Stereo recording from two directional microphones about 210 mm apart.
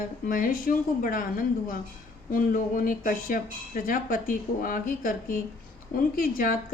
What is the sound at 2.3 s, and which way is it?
A woman's voice, 40° left (ahead or behind).